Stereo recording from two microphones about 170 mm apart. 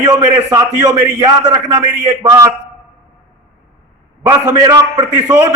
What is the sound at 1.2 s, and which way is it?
Speech, 25° right (ahead or behind).